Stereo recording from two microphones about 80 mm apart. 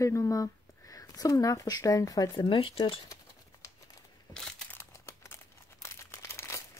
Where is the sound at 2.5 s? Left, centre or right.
Left.